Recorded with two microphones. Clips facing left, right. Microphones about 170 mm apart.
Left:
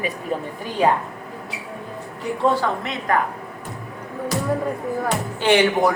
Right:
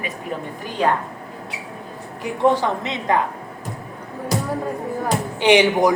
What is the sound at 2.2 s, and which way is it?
A woman's voice, 20° right (ahead or behind).